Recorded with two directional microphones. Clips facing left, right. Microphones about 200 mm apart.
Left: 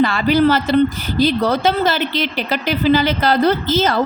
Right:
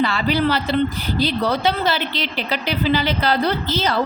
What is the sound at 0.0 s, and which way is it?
A woman's voice, 45° left (ahead or behind).